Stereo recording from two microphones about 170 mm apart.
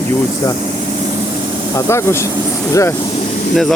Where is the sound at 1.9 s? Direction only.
15° left (ahead or behind).